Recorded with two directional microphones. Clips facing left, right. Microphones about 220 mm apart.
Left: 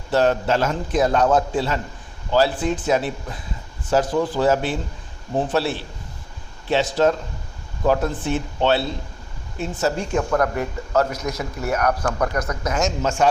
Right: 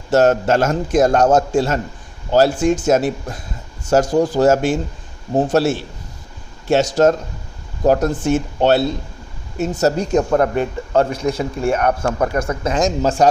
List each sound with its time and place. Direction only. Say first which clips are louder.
0.1 s a man's voice: right 5 dB; 45° right (ahead or behind)
2.8 s a man's voice: right 5 dB; 45° right (ahead or behind)
10.3 s a man's voice: right 5 dB; 25° right (ahead or behind)